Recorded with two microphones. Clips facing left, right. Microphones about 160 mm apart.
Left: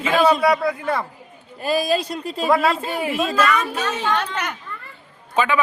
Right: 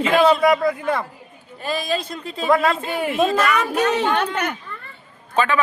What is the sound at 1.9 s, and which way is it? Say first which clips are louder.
Speech: left 3 dB; 10° left (ahead or behind).